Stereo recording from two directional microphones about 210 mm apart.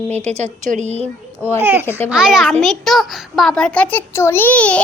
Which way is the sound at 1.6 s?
10° right (ahead or behind).